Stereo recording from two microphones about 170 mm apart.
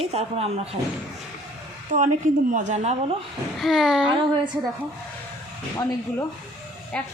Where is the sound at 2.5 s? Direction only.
45° right (ahead or behind).